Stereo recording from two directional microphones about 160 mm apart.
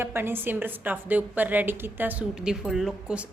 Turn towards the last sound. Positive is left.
turn(degrees=-5)  # may be behind; listen again after turning